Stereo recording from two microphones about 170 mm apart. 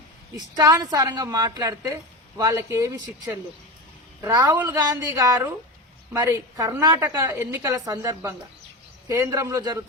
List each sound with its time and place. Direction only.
0.3 s a woman's voice: 20° right (ahead or behind)